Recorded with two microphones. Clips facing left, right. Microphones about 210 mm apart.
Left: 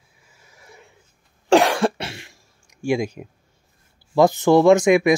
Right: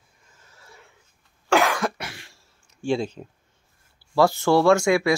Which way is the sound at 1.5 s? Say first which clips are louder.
Left 5 dB; 30° left (ahead or behind).